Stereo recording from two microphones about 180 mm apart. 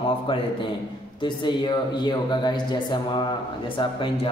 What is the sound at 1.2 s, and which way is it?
A man's voice, 25° left (ahead or behind).